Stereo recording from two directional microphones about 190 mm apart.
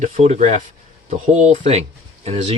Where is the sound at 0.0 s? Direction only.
35° right (ahead or behind).